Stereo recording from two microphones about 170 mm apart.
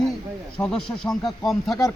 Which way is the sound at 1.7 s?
20° left (ahead or behind).